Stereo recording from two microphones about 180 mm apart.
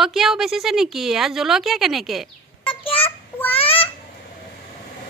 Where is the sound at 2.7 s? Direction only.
30° left (ahead or behind).